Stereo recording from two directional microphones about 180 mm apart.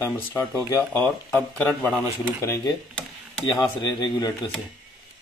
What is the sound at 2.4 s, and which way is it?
Speech, 20° left (ahead or behind).